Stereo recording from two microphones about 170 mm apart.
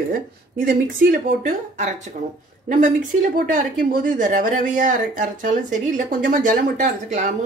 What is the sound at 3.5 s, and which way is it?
Speech, 50° right (ahead or behind).